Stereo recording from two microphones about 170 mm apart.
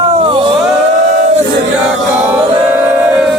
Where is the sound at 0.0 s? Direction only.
30° right (ahead or behind).